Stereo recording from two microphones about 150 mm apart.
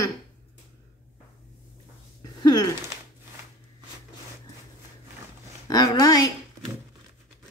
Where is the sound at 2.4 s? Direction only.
25° left (ahead or behind).